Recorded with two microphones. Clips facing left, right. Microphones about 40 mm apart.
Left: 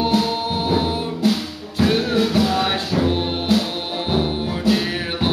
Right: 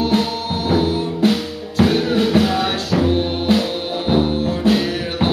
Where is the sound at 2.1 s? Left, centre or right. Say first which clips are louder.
Right 2 dB; right.